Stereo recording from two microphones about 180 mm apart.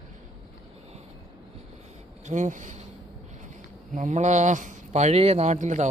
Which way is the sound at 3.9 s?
45° right (ahead or behind).